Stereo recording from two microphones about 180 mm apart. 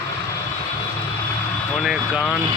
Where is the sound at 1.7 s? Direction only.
Centre (ahead or behind).